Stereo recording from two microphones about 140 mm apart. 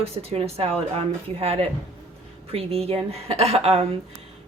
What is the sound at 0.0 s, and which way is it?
Speech, 45° right (ahead or behind).